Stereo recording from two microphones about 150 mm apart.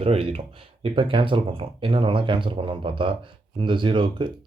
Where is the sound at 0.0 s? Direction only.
40° right (ahead or behind).